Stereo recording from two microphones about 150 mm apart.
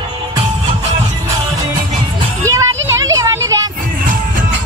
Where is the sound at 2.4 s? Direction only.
20° right (ahead or behind).